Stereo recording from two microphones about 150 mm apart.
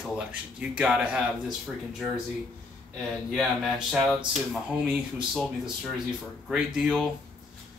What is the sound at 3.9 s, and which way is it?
Speech, 5° right (ahead or behind).